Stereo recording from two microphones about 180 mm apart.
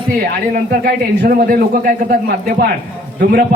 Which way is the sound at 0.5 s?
50° right (ahead or behind).